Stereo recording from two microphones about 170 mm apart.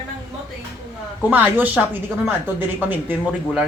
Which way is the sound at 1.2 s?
10° right (ahead or behind).